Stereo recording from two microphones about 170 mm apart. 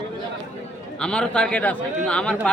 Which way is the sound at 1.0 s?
5° left (ahead or behind).